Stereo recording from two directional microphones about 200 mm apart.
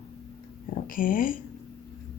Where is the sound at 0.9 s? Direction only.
45° left (ahead or behind).